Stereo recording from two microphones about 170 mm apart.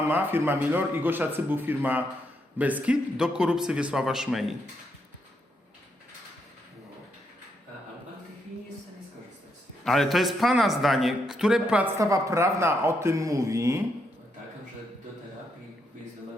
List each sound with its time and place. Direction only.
0.1 s a man's voice: 10° right (ahead or behind)
9.8 s a man's voice: centre (ahead or behind)
11.9 s speech: 20° right (ahead or behind)